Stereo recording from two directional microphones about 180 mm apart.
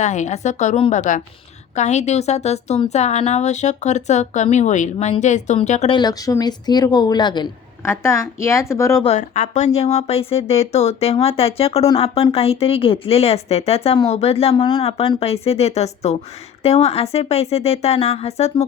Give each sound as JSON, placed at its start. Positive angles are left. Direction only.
{"t": 0.0, "sound": "speech", "side_deg": 40}
{"t": 5.9, "sound": "a woman's voice", "side_deg": 25}
{"t": 9.0, "sound": "speech", "side_deg": 40}